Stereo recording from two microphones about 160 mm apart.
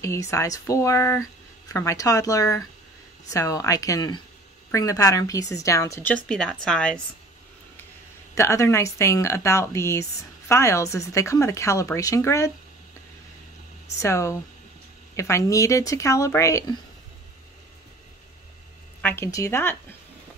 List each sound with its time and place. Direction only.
0.0 s a woman's voice: 20° left (ahead or behind)
8.4 s a woman's voice: 20° left (ahead or behind)
13.9 s a woman's voice: 20° left (ahead or behind)
18.9 s speech: 15° left (ahead or behind)